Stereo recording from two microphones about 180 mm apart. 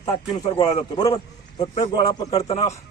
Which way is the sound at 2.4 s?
35° left (ahead or behind).